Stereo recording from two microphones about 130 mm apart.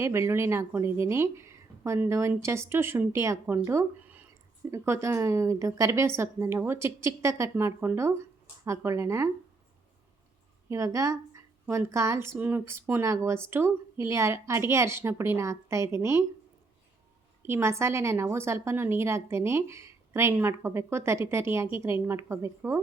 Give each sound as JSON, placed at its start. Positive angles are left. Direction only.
{"t": 0.0, "sound": "a woman's voice", "side_deg": -20}
{"t": 10.7, "sound": "a woman's voice", "side_deg": -25}
{"t": 17.4, "sound": "a woman's voice", "side_deg": -20}